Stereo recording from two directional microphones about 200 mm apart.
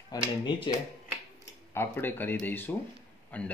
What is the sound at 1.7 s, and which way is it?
A man's voice, 10° left (ahead or behind).